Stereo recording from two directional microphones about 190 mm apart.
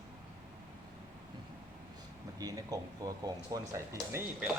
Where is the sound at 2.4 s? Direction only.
20° right (ahead or behind).